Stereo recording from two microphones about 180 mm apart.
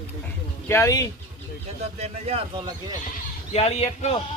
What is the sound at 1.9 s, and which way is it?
Speech, 35° right (ahead or behind).